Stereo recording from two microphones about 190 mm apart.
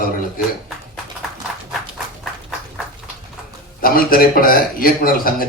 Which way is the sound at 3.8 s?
50° left (ahead or behind).